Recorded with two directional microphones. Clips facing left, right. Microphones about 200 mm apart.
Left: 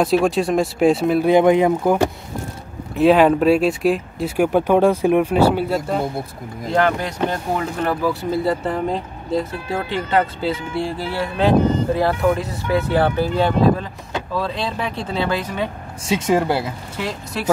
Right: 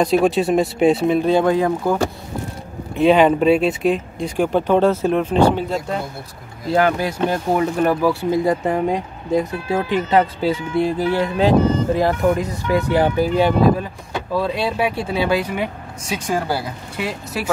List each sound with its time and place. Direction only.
0.0 s speech: centre (ahead or behind)
1.3 s speech: 20° left (ahead or behind)
3.0 s speech: centre (ahead or behind)
6.7 s speech: 10° right (ahead or behind)
16.1 s speech: 25° left (ahead or behind)
17.0 s speech: 5° right (ahead or behind)